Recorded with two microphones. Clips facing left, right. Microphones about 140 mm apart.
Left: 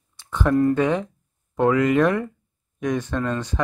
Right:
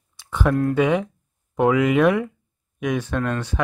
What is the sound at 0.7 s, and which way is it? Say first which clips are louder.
Speech: right 2 dB; 10° right (ahead or behind).